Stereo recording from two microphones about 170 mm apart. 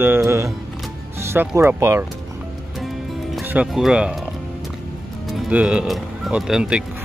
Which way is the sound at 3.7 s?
Centre (ahead or behind).